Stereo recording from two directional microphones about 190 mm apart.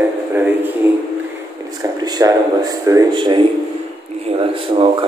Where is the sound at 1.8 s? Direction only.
20° right (ahead or behind).